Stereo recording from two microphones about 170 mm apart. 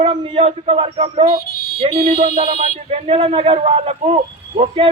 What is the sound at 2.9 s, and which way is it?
A man's voice, 40° right (ahead or behind).